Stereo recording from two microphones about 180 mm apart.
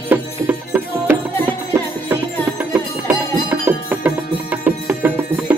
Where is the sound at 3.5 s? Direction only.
10° right (ahead or behind).